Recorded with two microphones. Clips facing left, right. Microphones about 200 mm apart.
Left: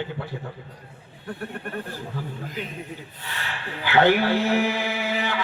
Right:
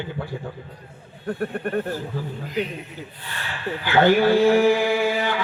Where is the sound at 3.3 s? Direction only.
45° right (ahead or behind).